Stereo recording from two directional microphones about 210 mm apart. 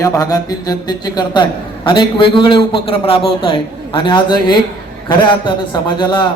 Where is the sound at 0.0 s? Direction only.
15° left (ahead or behind).